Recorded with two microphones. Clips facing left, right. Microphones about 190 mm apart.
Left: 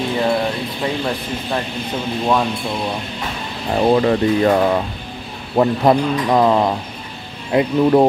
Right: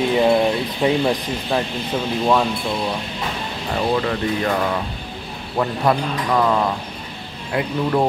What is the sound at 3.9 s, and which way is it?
Speech, 30° left (ahead or behind).